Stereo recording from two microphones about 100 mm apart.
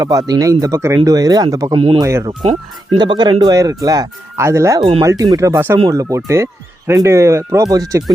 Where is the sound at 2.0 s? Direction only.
30° right (ahead or behind).